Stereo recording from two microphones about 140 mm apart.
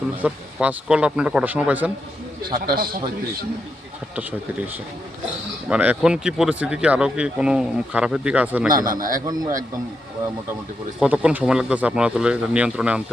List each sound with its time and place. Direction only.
0.2 s speech: 10° right (ahead or behind)
2.4 s a man's voice: 35° right (ahead or behind)
2.7 s speech: 90° right
4.1 s speech: 10° right (ahead or behind)
8.6 s a man's voice: 30° right (ahead or behind)
8.9 s a man's voice: 80° right
11.0 s speech: 10° right (ahead or behind)